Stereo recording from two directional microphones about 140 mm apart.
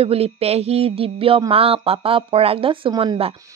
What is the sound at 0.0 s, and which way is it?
A woman's voice, 45° right (ahead or behind).